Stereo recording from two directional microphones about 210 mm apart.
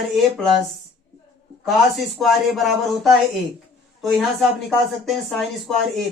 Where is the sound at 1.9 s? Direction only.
Centre (ahead or behind).